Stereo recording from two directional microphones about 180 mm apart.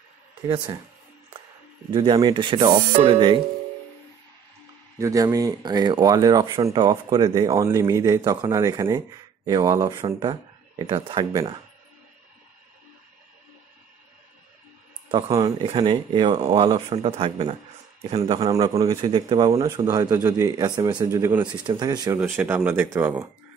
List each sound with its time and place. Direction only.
1.9 s speech: 25° right (ahead or behind)
4.9 s speech: 20° right (ahead or behind)
15.0 s speech: 20° right (ahead or behind)
16.9 s speech: 35° right (ahead or behind)
18.2 s speech: 20° right (ahead or behind)